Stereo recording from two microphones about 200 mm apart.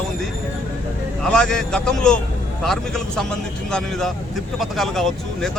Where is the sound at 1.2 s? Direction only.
5° left (ahead or behind).